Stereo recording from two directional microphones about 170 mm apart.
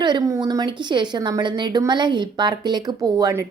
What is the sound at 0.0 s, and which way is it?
A woman's voice, 25° right (ahead or behind).